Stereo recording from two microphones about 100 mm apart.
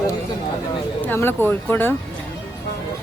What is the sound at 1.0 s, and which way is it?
Speech, 20° left (ahead or behind).